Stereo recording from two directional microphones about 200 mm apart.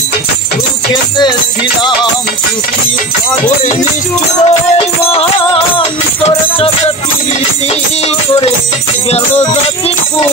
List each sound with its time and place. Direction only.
4.5 s music: 30° left (ahead or behind)